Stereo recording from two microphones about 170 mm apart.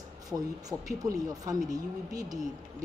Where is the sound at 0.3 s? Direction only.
20° right (ahead or behind).